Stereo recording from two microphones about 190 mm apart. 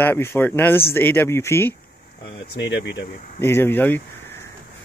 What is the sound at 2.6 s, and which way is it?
Speech, 65° left (ahead or behind).